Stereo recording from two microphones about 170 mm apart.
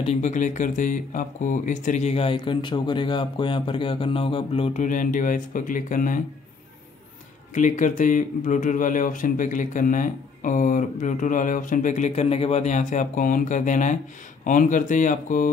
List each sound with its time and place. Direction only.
0.0 s speech: 40° left (ahead or behind)
4.8 s speech: 50° left (ahead or behind)
7.5 s speech: 50° left (ahead or behind)